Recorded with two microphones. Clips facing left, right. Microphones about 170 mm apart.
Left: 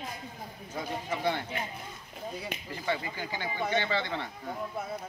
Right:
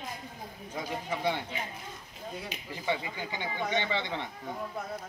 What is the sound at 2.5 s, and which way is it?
Speech, 55° left (ahead or behind).